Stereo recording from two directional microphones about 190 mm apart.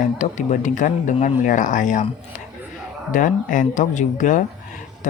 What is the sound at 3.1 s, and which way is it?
Speech, 45° left (ahead or behind).